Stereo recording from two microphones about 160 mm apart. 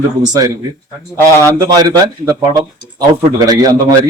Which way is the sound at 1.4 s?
25° right (ahead or behind).